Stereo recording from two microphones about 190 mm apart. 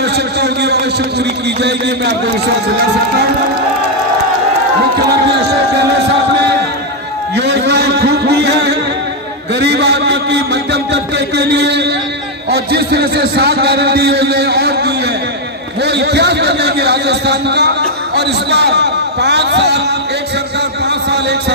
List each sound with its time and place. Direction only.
0.0 s a man's voice: 60° right (ahead or behind)
5.0 s a man's voice: 60° right (ahead or behind)
7.3 s a man's voice: 65° right (ahead or behind)
20.6 s a sound: 60° right (ahead or behind)